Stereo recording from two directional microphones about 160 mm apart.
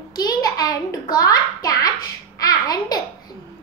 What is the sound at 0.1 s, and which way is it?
A child's voice, 25° left (ahead or behind).